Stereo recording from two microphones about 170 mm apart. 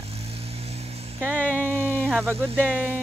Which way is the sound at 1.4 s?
10° left (ahead or behind).